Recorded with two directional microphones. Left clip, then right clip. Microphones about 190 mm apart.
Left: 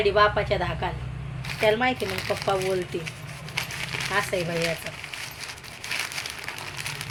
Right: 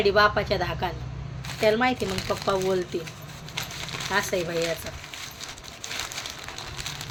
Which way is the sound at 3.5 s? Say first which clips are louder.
Left 3 dB; 20° right (ahead or behind).